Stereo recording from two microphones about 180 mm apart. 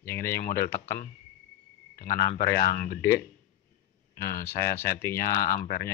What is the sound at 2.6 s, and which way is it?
Speech, 55° left (ahead or behind).